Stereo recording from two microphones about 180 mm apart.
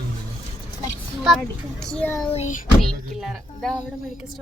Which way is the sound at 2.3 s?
40° left (ahead or behind).